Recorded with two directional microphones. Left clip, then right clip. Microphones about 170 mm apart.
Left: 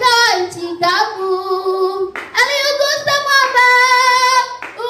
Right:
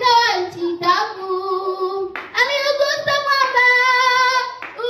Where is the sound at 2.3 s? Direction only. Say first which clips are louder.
Left 3 dB; 20° left (ahead or behind).